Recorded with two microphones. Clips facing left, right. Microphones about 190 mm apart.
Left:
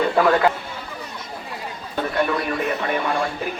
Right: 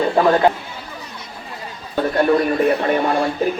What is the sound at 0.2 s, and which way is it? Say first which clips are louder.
Speech: right 3 dB; 25° right (ahead or behind).